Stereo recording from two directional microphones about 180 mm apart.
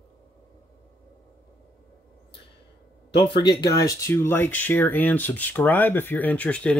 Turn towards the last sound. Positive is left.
turn(degrees=10)  # may be behind; listen again after turning